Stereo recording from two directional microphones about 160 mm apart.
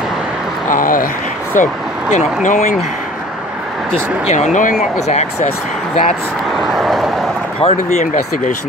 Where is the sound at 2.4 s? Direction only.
50° left (ahead or behind).